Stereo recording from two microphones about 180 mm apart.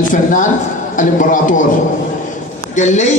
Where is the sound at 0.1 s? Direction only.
45° left (ahead or behind).